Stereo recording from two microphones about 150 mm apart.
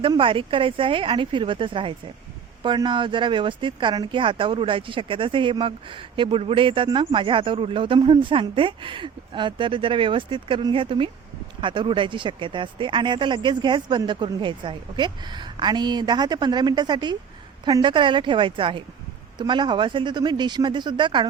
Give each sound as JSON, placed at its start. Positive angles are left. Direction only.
{"t": 0.0, "sound": "speech", "side_deg": -35}